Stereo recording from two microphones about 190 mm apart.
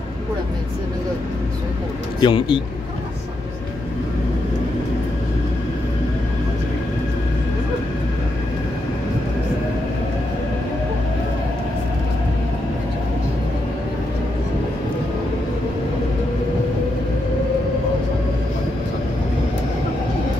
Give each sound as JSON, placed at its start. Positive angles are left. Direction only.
{"t": 2.1, "sound": "speech", "side_deg": 25}